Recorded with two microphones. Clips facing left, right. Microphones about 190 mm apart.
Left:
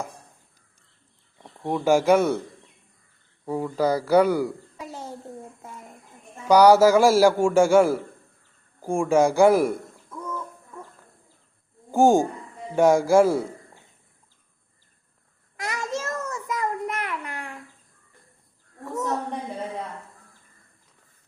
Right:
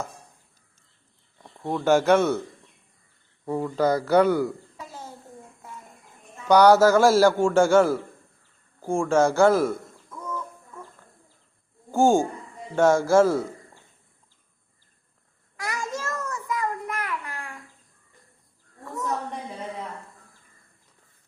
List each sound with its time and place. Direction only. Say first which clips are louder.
1.4 s speech: left 1 dB; 10° left (ahead or behind)
3.4 s a man's voice: even; 10° left (ahead or behind)
6.5 s a man's voice: left 1 dB; 10° left (ahead or behind)
11.9 s a man's voice: left 2 dB; 15° left (ahead or behind)
15.5 s child singing: left 2 dB; 20° left (ahead or behind)